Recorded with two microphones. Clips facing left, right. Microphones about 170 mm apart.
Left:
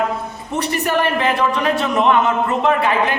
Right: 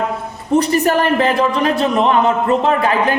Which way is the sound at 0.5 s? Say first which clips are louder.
Right 6 dB; 40° right (ahead or behind).